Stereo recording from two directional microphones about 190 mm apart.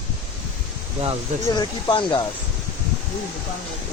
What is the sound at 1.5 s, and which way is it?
Speech, 25° left (ahead or behind).